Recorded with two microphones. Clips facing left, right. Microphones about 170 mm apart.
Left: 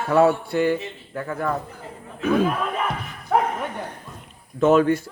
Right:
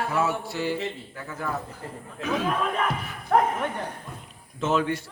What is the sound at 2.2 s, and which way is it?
Speech, 55° left (ahead or behind).